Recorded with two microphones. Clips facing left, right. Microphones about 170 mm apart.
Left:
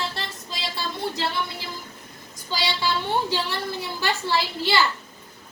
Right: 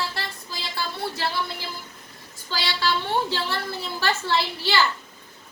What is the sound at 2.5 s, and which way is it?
A woman's voice, 15° left (ahead or behind).